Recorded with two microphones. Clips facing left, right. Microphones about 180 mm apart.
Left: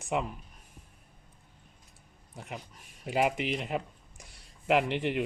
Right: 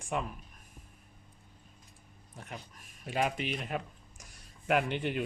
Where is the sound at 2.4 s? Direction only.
15° left (ahead or behind).